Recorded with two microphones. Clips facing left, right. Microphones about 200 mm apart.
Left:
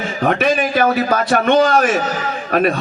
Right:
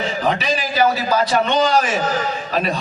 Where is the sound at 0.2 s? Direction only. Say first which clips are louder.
Left 7 dB; 55° left (ahead or behind).